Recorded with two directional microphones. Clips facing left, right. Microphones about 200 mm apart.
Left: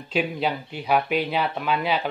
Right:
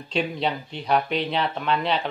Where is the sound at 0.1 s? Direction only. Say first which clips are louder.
Left 1 dB; 5° left (ahead or behind).